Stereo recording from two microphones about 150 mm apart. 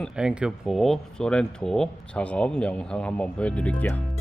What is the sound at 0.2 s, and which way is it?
Speech, 5° right (ahead or behind).